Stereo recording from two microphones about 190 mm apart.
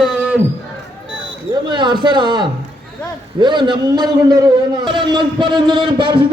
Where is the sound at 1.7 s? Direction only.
25° right (ahead or behind).